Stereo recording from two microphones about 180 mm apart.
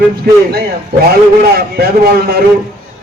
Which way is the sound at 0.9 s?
60° right (ahead or behind).